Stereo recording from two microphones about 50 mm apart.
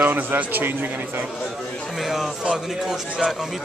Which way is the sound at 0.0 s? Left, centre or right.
Right.